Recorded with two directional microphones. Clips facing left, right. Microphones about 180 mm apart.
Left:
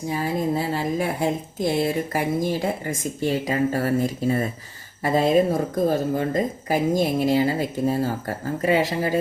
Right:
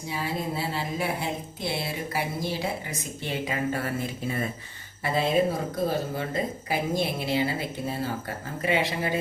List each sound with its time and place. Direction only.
0.1 s speech: 45° left (ahead or behind)